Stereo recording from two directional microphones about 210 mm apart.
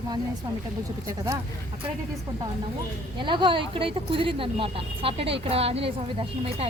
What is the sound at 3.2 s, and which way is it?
Speech, 25° right (ahead or behind).